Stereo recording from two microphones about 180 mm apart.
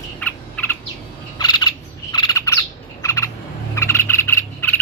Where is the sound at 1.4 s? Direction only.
25° left (ahead or behind).